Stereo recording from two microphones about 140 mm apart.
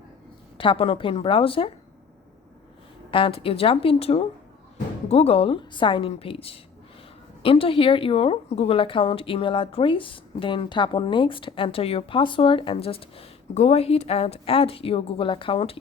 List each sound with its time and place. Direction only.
0.5 s speech: 40° left (ahead or behind)
3.1 s a woman's voice: 40° left (ahead or behind)